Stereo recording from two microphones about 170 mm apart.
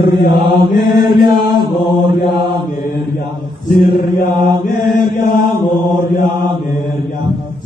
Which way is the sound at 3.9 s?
50° left (ahead or behind).